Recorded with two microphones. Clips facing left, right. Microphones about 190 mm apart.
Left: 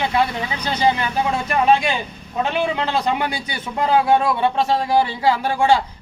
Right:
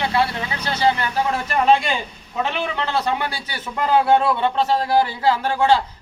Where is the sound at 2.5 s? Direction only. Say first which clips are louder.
Left 3 dB; 15° left (ahead or behind).